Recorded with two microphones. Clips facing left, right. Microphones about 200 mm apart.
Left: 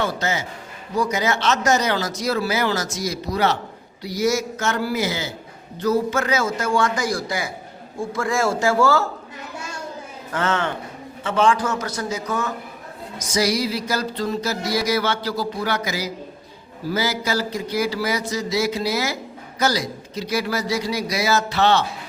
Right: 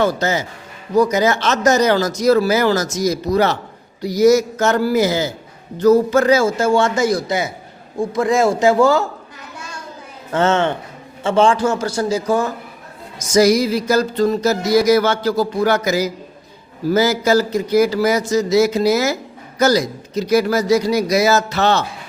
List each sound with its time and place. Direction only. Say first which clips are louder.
0.0 s a man's voice: right 6 dB; 40° right (ahead or behind)
0.9 s music: right 7 dB; 40° right (ahead or behind)
4.0 s a man's voice: right 9 dB; 40° right (ahead or behind); by 9.0 s 15° right (ahead or behind)
10.3 s a man's voice: right 7 dB; 25° right (ahead or behind)
13.1 s music: right 8 dB; 45° right (ahead or behind)